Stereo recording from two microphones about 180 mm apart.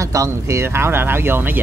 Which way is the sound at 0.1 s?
15° right (ahead or behind).